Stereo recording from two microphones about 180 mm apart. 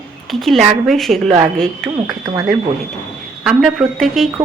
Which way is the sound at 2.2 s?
20° right (ahead or behind).